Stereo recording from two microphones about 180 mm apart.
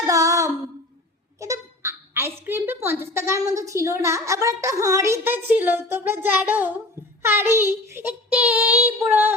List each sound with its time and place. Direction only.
0.1 s a sound: 20° right (ahead or behind)
1.4 s speech: 15° right (ahead or behind)
7.2 s child singing: 15° right (ahead or behind)